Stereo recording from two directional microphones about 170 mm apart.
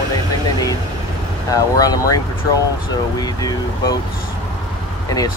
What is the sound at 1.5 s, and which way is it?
Speech, 20° left (ahead or behind).